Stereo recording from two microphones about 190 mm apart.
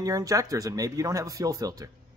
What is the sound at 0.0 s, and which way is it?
A man's voice, 20° right (ahead or behind).